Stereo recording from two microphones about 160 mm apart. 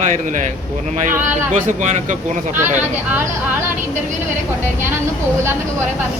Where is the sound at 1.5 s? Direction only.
50° right (ahead or behind).